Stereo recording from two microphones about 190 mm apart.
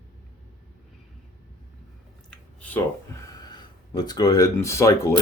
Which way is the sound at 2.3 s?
5° left (ahead or behind).